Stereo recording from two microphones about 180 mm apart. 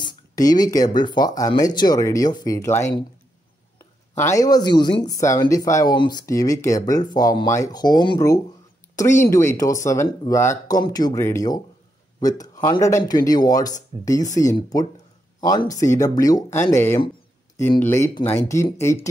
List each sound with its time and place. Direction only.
0.0 s speech: 25° left (ahead or behind)
4.2 s speech: 20° left (ahead or behind)